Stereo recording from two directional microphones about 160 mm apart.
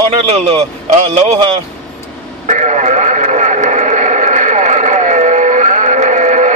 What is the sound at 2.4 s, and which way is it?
Radio, 45° right (ahead or behind).